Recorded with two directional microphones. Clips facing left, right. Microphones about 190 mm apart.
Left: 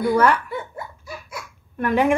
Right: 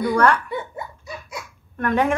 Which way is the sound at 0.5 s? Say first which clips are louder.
Right 1 dB; 25° right (ahead or behind).